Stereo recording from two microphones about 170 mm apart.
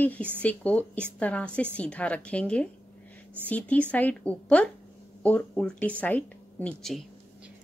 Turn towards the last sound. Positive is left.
turn(degrees=0)  # may be behind; listen again after turning